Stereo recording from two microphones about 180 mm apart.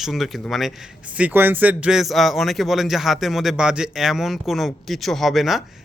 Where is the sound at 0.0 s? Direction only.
Centre (ahead or behind).